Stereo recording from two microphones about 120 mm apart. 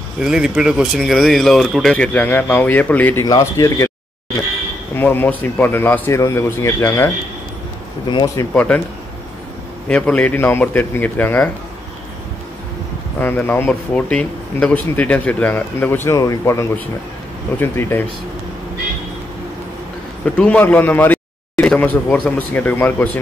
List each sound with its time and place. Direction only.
0.2 s speech: 5° right (ahead or behind); by 3.3 s 15° left (ahead or behind)
3.3 s speech: 30° left (ahead or behind)
4.9 s speech: 15° left (ahead or behind)
8.1 s speech: 40° left (ahead or behind)
8.5 s speech: 10° left (ahead or behind)
9.8 s speech: 10° left (ahead or behind)
13.2 s speech: 15° left (ahead or behind)
20.3 s speech: 10° left (ahead or behind)